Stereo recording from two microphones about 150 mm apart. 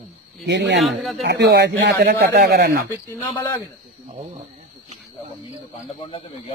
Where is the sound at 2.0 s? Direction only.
90° right.